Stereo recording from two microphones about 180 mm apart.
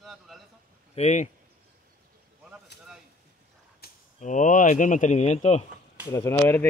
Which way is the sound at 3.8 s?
60° left (ahead or behind).